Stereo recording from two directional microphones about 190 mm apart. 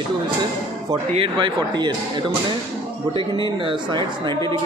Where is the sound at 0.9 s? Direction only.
25° right (ahead or behind).